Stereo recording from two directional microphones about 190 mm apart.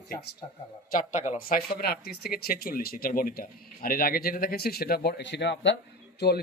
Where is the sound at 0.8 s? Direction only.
45° left (ahead or behind).